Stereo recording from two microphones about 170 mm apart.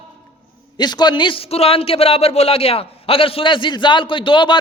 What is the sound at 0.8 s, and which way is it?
A man's voice, 25° left (ahead or behind).